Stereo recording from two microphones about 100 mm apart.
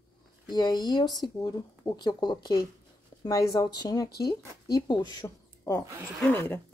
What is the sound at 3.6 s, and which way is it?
Speech, 45° left (ahead or behind).